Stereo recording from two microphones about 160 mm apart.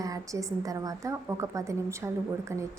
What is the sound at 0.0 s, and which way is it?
A woman's voice, 20° right (ahead or behind).